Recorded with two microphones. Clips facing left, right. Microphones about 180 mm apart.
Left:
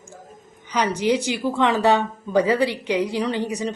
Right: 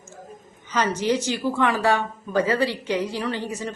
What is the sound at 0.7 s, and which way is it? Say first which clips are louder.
Speech: left 2 dB; 15° left (ahead or behind).